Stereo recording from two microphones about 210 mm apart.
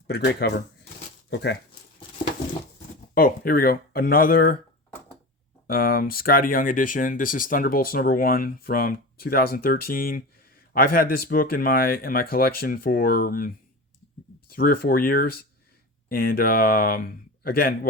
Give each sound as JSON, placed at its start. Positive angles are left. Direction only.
{"t": 0.1, "sound": "speech", "side_deg": 50}
{"t": 3.2, "sound": "speech", "side_deg": 45}
{"t": 5.6, "sound": "speech", "side_deg": 45}
{"t": 14.5, "sound": "speech", "side_deg": 45}